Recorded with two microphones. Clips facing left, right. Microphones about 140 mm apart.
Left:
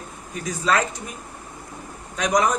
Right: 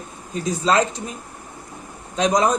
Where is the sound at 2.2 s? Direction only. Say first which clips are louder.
Right 2 dB; 25° right (ahead or behind).